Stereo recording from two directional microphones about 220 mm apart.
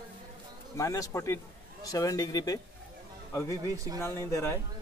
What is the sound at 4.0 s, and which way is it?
Speech, 10° left (ahead or behind).